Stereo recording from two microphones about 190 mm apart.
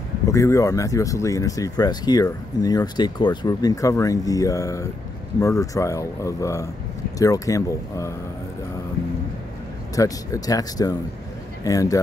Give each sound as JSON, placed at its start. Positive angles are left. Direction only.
{"t": 0.3, "sound": "speech", "side_deg": 15}
{"t": 9.9, "sound": "speech", "side_deg": 20}